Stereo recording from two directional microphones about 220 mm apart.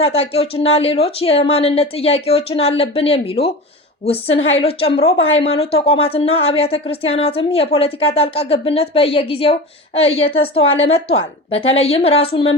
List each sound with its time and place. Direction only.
0.0 s a woman's voice: 25° left (ahead or behind)